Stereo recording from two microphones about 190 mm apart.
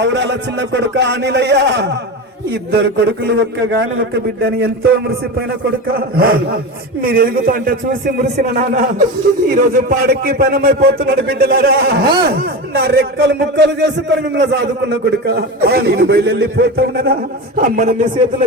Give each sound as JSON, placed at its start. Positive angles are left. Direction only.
{"t": 0.0, "sound": "a man's voice", "side_deg": -65}
{"t": 17.6, "sound": "a man's voice", "side_deg": -45}